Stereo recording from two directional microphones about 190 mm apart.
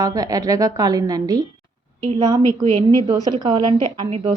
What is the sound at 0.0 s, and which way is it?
A woman's voice, 20° right (ahead or behind).